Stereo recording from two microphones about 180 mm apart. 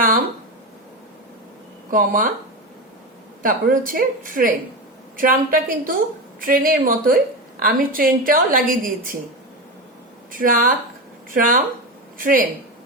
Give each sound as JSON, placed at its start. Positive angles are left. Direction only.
{"t": 1.9, "sound": "a woman's voice", "side_deg": -50}
{"t": 3.4, "sound": "a woman's voice", "side_deg": -50}
{"t": 10.3, "sound": "a woman's voice", "side_deg": -50}